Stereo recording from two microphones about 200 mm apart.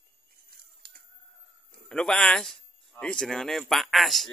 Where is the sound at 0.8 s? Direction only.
45° right (ahead or behind).